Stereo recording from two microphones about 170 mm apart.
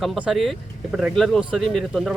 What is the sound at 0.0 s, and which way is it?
Speech, centre (ahead or behind).